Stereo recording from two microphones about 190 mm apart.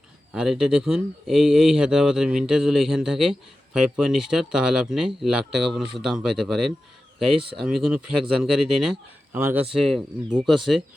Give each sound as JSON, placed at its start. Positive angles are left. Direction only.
{"t": 0.3, "sound": "speech", "side_deg": -5}